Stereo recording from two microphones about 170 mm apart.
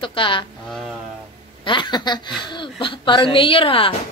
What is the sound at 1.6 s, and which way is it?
Speech, 25° left (ahead or behind).